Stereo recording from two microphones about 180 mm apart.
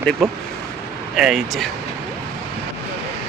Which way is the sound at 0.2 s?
Centre (ahead or behind).